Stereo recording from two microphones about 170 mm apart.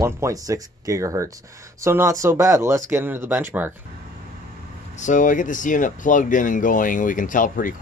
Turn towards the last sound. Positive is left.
turn(degrees=50)  # may be behind; listen again after turning